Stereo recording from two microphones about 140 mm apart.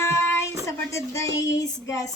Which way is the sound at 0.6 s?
20° left (ahead or behind).